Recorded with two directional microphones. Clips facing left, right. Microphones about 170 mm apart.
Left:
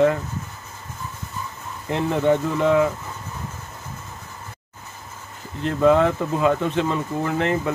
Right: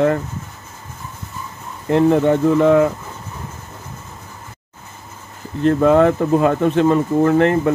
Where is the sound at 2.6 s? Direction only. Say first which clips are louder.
Right 6 dB; 50° right (ahead or behind).